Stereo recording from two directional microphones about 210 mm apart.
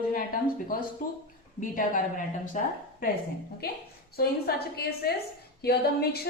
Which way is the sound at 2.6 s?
35° left (ahead or behind).